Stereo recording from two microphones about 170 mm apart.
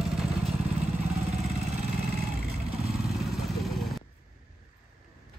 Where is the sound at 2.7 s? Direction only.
Centre (ahead or behind).